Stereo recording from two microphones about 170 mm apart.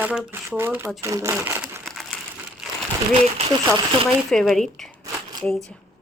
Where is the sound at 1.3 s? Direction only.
10° right (ahead or behind).